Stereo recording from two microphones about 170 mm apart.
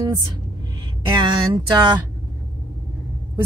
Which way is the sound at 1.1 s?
25° right (ahead or behind).